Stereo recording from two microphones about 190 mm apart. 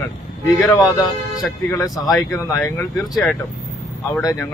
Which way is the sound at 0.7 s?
20° left (ahead or behind).